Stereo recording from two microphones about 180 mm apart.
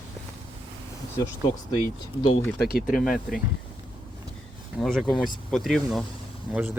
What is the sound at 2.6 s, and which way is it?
Speech, 55° left (ahead or behind).